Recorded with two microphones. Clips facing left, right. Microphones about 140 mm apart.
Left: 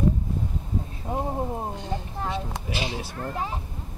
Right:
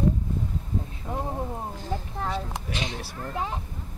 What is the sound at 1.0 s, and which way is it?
Thunder, 25° left (ahead or behind).